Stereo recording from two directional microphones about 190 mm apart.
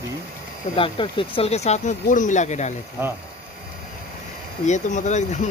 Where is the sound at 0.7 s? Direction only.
25° left (ahead or behind).